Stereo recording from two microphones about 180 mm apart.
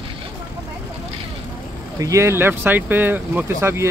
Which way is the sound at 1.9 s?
15° right (ahead or behind).